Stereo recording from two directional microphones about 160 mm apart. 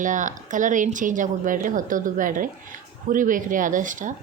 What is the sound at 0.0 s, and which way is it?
Speech, 55° right (ahead or behind).